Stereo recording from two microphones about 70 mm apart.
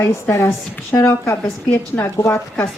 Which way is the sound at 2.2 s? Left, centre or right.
Left.